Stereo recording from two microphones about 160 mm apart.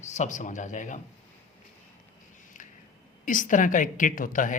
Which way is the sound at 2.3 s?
50° left (ahead or behind).